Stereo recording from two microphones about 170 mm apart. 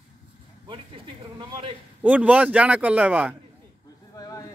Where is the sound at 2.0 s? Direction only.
10° right (ahead or behind).